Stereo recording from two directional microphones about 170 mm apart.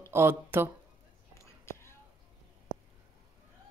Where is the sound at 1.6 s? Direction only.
15° left (ahead or behind).